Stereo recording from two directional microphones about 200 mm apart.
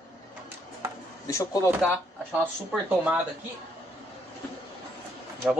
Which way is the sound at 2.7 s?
10° right (ahead or behind).